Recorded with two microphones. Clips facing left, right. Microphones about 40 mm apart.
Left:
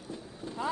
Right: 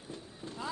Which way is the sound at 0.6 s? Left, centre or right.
Left.